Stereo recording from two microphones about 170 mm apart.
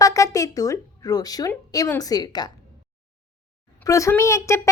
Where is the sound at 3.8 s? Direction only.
20° left (ahead or behind).